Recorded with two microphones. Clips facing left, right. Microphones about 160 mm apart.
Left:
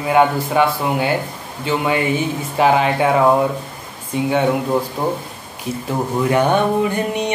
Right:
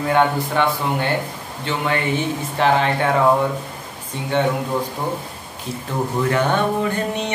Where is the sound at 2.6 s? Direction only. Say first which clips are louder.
Left 3 dB; 10° left (ahead or behind).